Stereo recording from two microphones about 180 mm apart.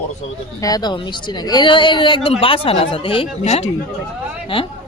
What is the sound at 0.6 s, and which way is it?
A woman's voice, 20° left (ahead or behind).